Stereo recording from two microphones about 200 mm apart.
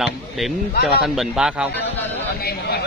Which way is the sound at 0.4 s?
Centre (ahead or behind).